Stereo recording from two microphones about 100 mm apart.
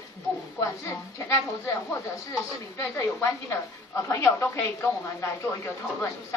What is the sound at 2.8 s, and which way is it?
A woman's voice, 30° left (ahead or behind).